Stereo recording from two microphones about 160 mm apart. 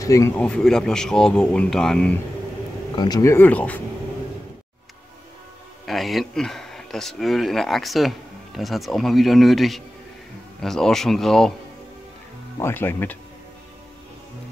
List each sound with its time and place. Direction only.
0.0 s speech: 20° left (ahead or behind)
0.4 s speech: 5° left (ahead or behind)
3.0 s speech: 20° left (ahead or behind)
5.9 s speech: centre (ahead or behind)
12.5 s speech: 15° left (ahead or behind)